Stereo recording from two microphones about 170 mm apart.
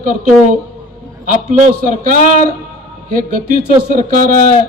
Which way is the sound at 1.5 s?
45° right (ahead or behind).